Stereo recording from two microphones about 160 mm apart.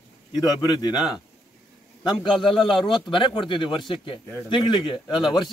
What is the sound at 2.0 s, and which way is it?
A man's voice, 30° left (ahead or behind).